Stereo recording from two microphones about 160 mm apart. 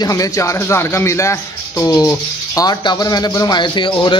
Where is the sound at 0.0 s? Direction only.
20° left (ahead or behind).